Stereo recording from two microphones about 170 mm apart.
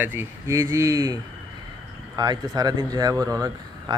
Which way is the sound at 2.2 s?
25° right (ahead or behind).